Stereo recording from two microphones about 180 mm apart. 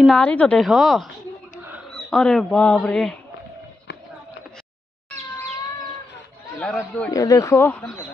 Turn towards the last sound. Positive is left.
turn(degrees=10)  # may be behind; listen again after turning